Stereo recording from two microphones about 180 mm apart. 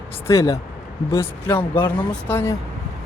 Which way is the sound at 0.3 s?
15° left (ahead or behind).